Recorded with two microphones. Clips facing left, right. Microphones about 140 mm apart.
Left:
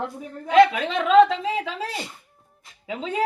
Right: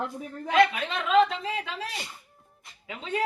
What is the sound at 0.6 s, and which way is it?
A woman's voice, 90° left.